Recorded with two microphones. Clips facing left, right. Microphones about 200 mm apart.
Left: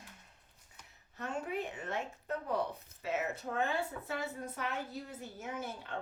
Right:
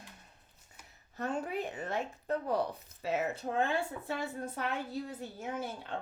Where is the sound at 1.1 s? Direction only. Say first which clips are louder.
Right 3 dB; 35° right (ahead or behind).